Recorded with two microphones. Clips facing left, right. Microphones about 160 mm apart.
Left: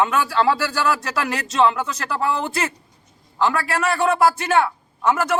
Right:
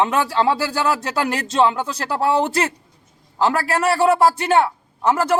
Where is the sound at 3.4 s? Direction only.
35° right (ahead or behind).